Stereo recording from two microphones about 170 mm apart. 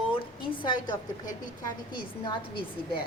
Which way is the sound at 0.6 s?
25° left (ahead or behind).